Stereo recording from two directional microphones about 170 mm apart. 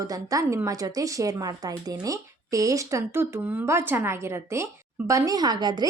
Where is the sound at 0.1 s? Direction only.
20° right (ahead or behind).